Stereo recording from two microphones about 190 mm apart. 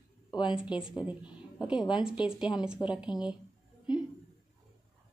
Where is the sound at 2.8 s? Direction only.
10° left (ahead or behind).